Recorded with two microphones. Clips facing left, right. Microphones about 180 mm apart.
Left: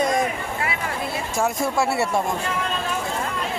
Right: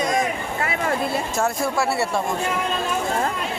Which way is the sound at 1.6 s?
20° left (ahead or behind).